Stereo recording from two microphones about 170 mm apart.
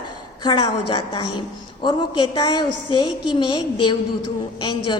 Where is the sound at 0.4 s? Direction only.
30° left (ahead or behind).